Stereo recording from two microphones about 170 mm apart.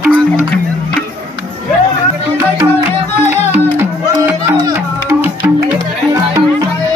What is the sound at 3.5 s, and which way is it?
Music, 15° right (ahead or behind).